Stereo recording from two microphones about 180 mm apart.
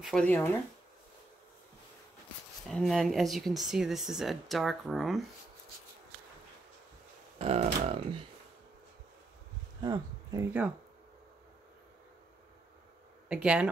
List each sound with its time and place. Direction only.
0.0 s speech: 5° left (ahead or behind)
2.7 s speech: centre (ahead or behind)
7.3 s speech: 35° right (ahead or behind)
9.8 s a sound: 20° right (ahead or behind)
13.3 s speech: 5° right (ahead or behind)